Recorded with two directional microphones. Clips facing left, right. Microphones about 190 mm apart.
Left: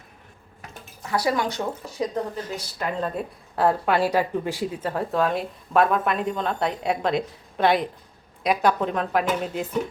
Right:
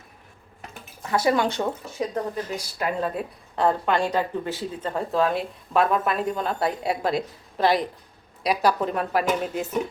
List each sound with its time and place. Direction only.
1.1 s speech: 25° right (ahead or behind)
2.3 s a woman's voice: 10° right (ahead or behind)